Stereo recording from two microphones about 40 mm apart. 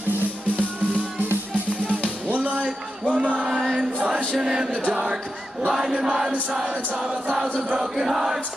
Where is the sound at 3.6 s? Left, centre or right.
Right.